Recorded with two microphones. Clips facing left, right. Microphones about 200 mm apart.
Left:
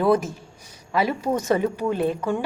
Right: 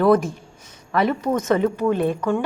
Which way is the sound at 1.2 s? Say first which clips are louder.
Right 2 dB; 30° left (ahead or behind).